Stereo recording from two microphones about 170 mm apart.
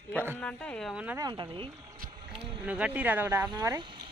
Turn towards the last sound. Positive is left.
turn(degrees=-25)  # may be behind; listen again after turning